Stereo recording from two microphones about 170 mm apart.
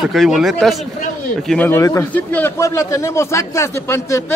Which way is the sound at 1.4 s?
10° left (ahead or behind).